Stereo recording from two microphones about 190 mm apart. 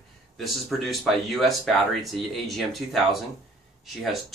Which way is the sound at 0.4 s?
Centre (ahead or behind).